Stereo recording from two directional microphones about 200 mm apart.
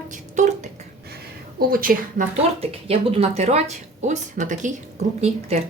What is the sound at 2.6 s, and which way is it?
Speech, 30° right (ahead or behind).